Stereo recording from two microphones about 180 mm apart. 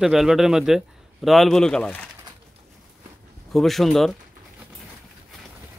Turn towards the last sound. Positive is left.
turn(degrees=0)  # may be behind; listen again after turning